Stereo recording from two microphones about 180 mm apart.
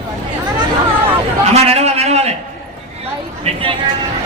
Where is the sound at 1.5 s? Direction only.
35° right (ahead or behind).